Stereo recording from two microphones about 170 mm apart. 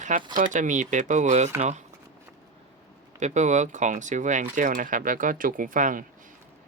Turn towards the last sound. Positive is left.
turn(degrees=-50)  # may be behind; listen again after turning